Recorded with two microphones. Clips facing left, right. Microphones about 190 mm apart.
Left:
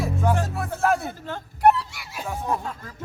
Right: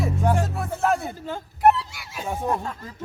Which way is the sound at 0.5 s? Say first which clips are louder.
Even; centre (ahead or behind).